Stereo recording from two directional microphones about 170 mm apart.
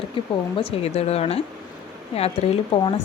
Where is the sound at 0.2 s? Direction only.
30° left (ahead or behind).